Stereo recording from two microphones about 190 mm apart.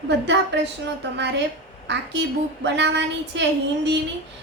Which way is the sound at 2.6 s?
65° right (ahead or behind).